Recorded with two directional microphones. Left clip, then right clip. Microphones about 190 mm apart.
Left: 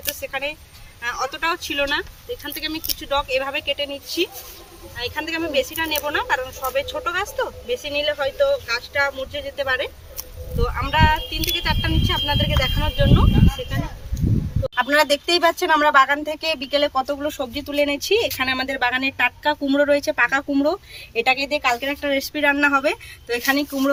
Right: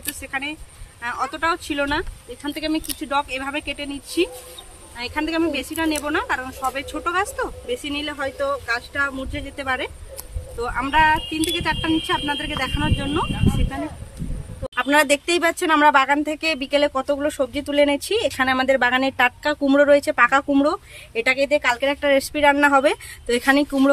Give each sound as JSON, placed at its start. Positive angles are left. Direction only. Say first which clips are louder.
{"t": 0.2, "sound": "speech", "louder": "right 2 dB", "side_deg": -35}
{"t": 14.8, "sound": "speech", "louder": "even", "side_deg": -60}